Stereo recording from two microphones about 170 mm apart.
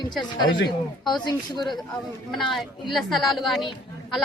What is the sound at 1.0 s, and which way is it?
Speech, 25° left (ahead or behind).